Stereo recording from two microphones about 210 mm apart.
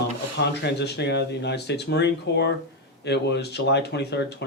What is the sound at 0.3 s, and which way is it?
Speech, 55° left (ahead or behind).